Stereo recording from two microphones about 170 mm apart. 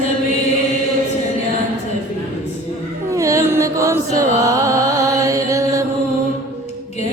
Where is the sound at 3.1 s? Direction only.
20° right (ahead or behind).